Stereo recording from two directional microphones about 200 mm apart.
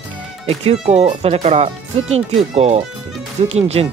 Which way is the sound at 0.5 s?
30° right (ahead or behind).